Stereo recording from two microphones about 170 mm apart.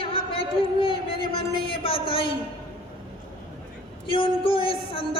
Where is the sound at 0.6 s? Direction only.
30° left (ahead or behind).